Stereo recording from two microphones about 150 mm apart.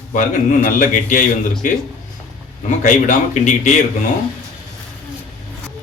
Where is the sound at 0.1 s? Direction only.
60° left (ahead or behind).